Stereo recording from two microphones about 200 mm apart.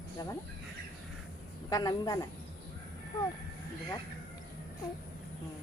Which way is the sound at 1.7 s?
20° left (ahead or behind).